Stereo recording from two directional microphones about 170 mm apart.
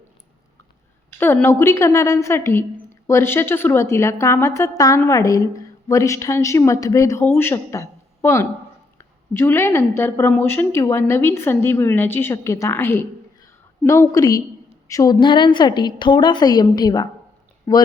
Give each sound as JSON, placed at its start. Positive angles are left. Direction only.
{"t": 1.2, "sound": "a woman's voice", "side_deg": 15}